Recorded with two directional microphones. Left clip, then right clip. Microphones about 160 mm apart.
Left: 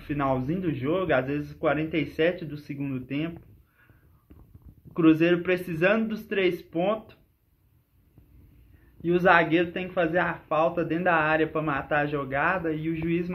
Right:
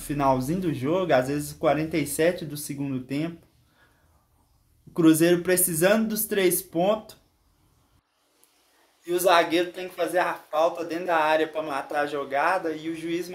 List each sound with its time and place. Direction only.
0.1 s speech: 40° right (ahead or behind)
4.9 s speech: 40° right (ahead or behind)
9.0 s speech: 45° right (ahead or behind)